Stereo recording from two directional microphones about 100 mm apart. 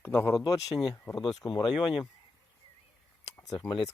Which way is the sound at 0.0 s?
25° left (ahead or behind).